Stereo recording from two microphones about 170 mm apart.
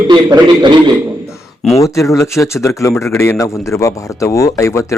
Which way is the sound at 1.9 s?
20° left (ahead or behind).